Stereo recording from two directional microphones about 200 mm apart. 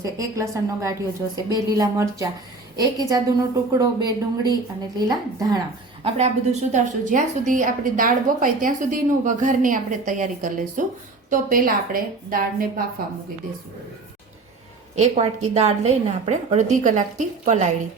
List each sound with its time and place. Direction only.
0.0 s a woman's voice: 15° right (ahead or behind)
6.0 s a woman's voice: 35° right (ahead or behind)
14.9 s a woman's voice: 35° right (ahead or behind)